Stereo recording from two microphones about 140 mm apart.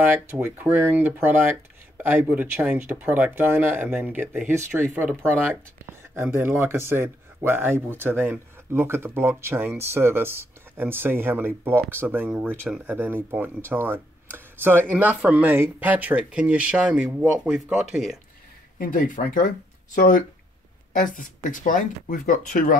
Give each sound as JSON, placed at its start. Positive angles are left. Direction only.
{"t": 0.0, "sound": "speech", "side_deg": -15}
{"t": 18.8, "sound": "speech", "side_deg": 75}